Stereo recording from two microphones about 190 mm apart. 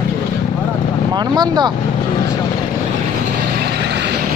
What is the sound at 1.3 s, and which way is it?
Speech, 25° right (ahead or behind).